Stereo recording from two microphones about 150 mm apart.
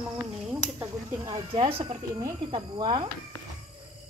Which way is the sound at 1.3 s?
35° right (ahead or behind).